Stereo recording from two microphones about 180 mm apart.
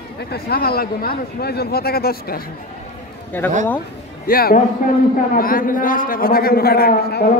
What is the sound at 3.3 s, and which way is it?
Speech, 10° left (ahead or behind).